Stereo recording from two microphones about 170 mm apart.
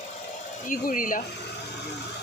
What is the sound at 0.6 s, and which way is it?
Speech, 55° left (ahead or behind).